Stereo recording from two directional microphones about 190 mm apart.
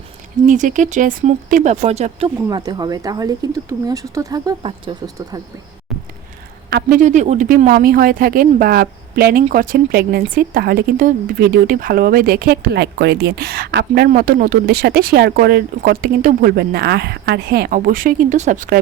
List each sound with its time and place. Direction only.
0.4 s speech: 40° right (ahead or behind)
2.5 s speech: 20° right (ahead or behind)
6.7 s speech: 55° right (ahead or behind)
7.0 s speech: 40° right (ahead or behind); by 14.1 s 60° right (ahead or behind)
14.1 s speech: 50° right (ahead or behind)